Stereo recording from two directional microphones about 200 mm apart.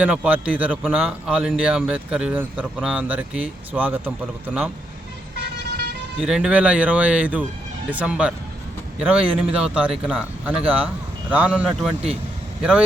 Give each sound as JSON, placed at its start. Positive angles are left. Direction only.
{"t": 0.0, "sound": "a man's voice", "side_deg": -5}
{"t": 5.4, "sound": "vehicle", "side_deg": -55}
{"t": 6.1, "sound": "a man's voice", "side_deg": -5}
{"t": 9.1, "sound": "speech", "side_deg": -30}
{"t": 9.5, "sound": "speech", "side_deg": -5}